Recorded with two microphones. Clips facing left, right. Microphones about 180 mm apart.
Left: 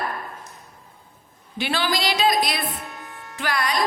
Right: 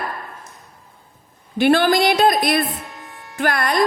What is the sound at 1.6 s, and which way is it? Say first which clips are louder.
A woman's voice: right 10 dB; 55° right (ahead or behind).